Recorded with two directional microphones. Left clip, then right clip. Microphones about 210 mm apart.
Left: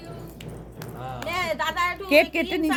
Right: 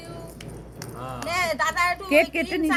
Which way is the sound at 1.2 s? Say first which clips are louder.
Right 2 dB; 35° left (ahead or behind).